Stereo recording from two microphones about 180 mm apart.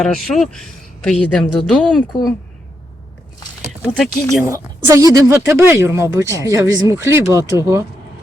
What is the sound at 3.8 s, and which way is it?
Speech, centre (ahead or behind).